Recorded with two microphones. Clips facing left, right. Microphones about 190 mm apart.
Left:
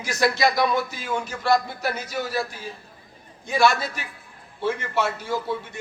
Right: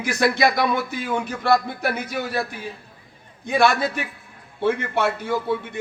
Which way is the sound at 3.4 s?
55° right (ahead or behind).